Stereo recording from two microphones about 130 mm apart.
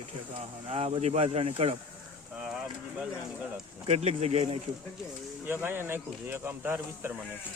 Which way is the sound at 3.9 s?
55° right (ahead or behind).